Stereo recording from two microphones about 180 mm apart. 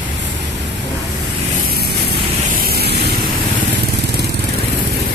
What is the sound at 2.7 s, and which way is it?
Vehicle, 60° right (ahead or behind).